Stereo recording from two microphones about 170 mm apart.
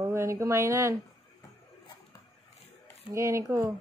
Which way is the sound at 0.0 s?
15° right (ahead or behind).